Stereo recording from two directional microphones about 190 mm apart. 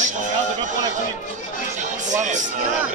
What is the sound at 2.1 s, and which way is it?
Music, 40° right (ahead or behind).